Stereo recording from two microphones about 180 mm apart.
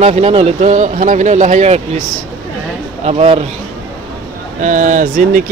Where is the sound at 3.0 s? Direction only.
35° right (ahead or behind).